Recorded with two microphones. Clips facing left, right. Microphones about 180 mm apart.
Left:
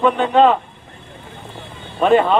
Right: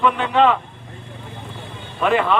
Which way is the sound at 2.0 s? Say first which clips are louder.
Left 5 dB; 30° left (ahead or behind).